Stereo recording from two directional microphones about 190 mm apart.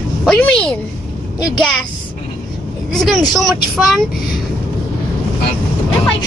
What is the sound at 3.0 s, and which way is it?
Speech, centre (ahead or behind).